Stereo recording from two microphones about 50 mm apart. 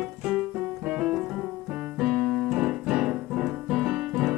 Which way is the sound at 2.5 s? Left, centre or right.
Centre.